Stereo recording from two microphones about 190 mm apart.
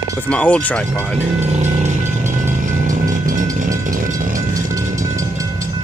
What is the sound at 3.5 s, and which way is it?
Vehicle, 45° right (ahead or behind).